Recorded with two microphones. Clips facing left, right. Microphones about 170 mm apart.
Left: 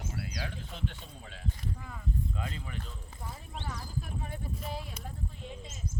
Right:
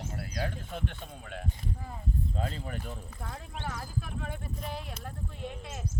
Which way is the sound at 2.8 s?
75° right (ahead or behind).